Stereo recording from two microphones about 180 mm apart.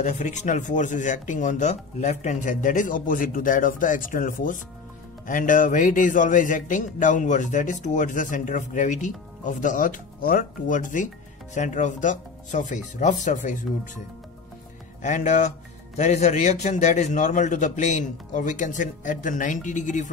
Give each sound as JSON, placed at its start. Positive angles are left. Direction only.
{"t": 0.0, "sound": "speech", "side_deg": 40}
{"t": 15.0, "sound": "speech", "side_deg": 40}